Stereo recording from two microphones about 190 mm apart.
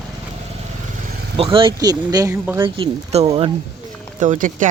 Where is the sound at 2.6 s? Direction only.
25° right (ahead or behind).